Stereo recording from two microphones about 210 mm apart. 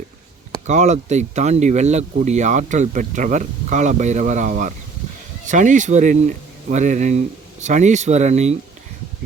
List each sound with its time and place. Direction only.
0.7 s speech: 35° right (ahead or behind)